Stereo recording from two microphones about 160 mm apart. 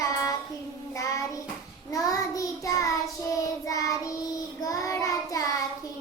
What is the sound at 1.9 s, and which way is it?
Child singing, 20° left (ahead or behind).